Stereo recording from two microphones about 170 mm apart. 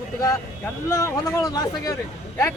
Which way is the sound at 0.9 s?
15° left (ahead or behind).